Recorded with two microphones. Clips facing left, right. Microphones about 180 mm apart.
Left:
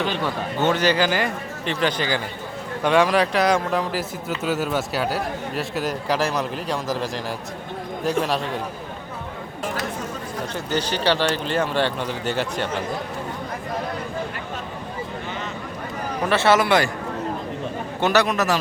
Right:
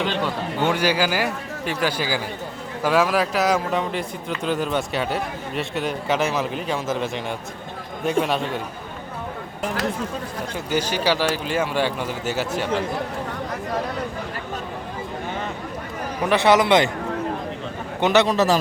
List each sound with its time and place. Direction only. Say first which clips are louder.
0.6 s a man's voice: left 1 dB; 10° right (ahead or behind)
10.5 s speech: right 1 dB; 10° right (ahead or behind)
16.2 s speech: right 1 dB; 15° right (ahead or behind)
18.0 s a man's voice: right 2 dB; 20° right (ahead or behind)
18.3 s a man's voice: right 3 dB; 30° right (ahead or behind)